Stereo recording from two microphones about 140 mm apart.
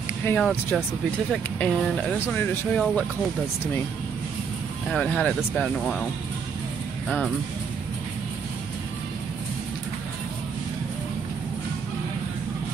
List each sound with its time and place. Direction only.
0.4 s speech: 10° left (ahead or behind)
4.8 s speech: 5° left (ahead or behind)